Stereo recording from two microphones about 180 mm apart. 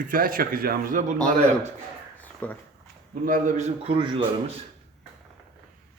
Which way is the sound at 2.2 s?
10° left (ahead or behind).